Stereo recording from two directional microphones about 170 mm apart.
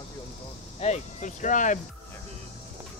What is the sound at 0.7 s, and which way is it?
Speech, 40° left (ahead or behind).